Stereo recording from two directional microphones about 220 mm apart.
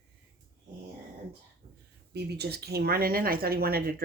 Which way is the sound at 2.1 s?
45° right (ahead or behind).